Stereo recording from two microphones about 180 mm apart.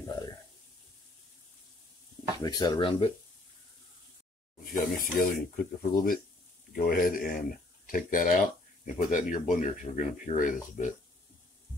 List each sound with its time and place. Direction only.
0.0 s a sound: 20° left (ahead or behind)
2.4 s speech: 20° left (ahead or behind)
4.7 s speech: 50° left (ahead or behind)